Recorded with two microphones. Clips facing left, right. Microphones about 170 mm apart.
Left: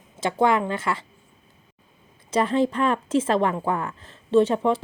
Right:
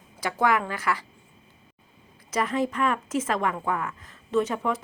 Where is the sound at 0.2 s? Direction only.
25° left (ahead or behind).